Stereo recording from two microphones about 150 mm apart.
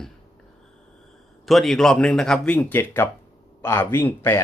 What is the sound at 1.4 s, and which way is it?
Speech, centre (ahead or behind).